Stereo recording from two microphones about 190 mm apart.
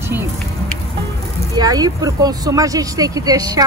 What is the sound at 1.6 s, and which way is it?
Speech, 20° right (ahead or behind).